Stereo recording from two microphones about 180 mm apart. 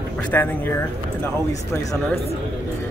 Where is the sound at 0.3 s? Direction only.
10° left (ahead or behind).